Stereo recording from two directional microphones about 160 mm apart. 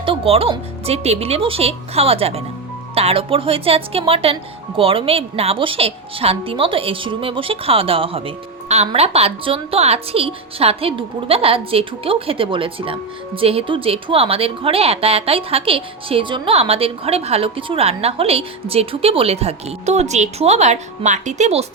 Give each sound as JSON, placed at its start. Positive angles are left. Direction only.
{"t": 0.0, "sound": "a woman's voice", "side_deg": -35}